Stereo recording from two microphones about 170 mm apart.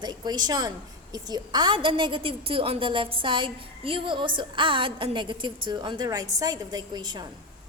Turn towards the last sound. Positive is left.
turn(degrees=-25)  # may be behind; listen again after turning